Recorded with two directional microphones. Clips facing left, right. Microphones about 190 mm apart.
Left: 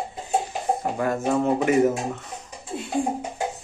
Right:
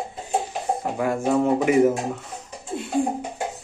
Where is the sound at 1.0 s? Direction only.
10° right (ahead or behind).